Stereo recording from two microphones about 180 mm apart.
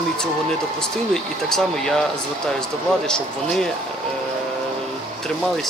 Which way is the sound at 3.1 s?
5° left (ahead or behind).